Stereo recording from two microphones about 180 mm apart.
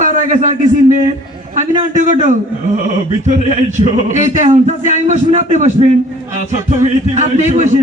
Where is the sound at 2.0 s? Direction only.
40° right (ahead or behind).